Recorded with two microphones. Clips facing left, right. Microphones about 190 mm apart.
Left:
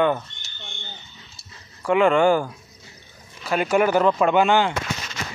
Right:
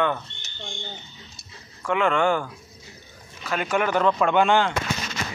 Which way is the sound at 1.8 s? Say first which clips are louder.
Left 5 dB; 30° left (ahead or behind).